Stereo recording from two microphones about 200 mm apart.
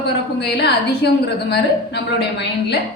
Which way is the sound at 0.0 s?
55° left (ahead or behind).